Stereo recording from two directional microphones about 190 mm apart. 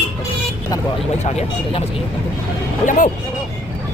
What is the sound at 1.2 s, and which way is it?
Speech, 35° left (ahead or behind).